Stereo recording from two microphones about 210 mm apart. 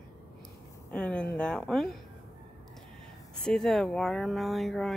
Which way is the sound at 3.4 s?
Centre (ahead or behind).